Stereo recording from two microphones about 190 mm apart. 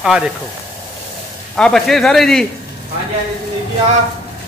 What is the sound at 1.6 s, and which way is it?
Speech, centre (ahead or behind).